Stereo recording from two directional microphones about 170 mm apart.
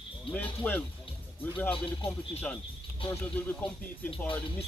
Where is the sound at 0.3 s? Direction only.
10° left (ahead or behind).